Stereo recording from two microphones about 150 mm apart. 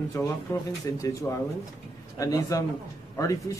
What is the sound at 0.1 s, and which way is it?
Speech, 20° left (ahead or behind).